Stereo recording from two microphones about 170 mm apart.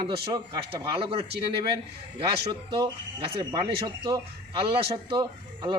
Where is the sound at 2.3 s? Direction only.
30° right (ahead or behind).